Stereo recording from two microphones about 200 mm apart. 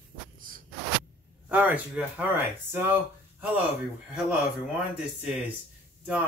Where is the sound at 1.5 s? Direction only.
5° right (ahead or behind).